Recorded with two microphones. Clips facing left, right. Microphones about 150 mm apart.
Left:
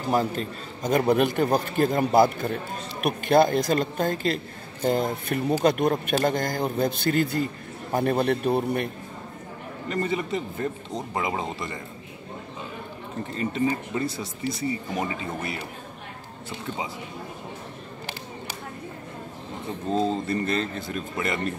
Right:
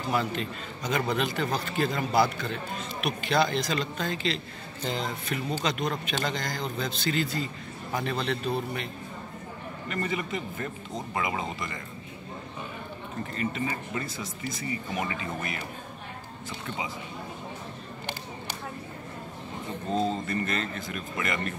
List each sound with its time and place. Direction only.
0.1 s a man's voice: 40° left (ahead or behind); by 8.9 s 55° left (ahead or behind)
9.8 s speech: 35° left (ahead or behind)
13.4 s speech: 30° left (ahead or behind)
19.9 s a sound: centre (ahead or behind)
20.2 s speech: 30° left (ahead or behind)